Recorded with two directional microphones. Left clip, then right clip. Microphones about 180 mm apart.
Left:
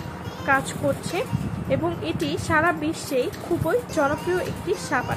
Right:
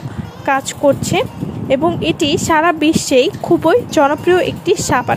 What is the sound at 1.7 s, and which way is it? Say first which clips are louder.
Speech: right 11 dB; 45° right (ahead or behind).